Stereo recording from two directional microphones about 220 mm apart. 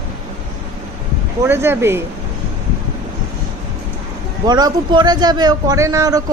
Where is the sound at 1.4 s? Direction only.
10° right (ahead or behind).